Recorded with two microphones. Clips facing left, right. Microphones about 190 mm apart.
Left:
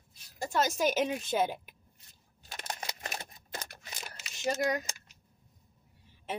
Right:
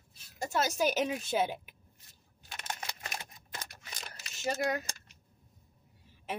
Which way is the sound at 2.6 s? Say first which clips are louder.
Left 2 dB; 35° left (ahead or behind).